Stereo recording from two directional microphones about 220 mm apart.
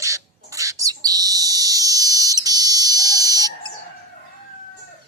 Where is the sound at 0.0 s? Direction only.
15° right (ahead or behind).